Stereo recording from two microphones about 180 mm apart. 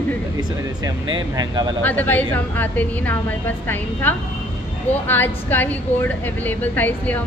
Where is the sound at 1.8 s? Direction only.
10° left (ahead or behind).